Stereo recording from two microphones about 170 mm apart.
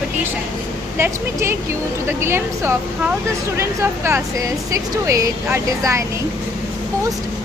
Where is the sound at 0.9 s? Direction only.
15° right (ahead or behind).